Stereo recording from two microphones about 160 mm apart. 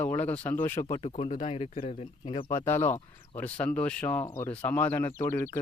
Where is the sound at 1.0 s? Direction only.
35° left (ahead or behind).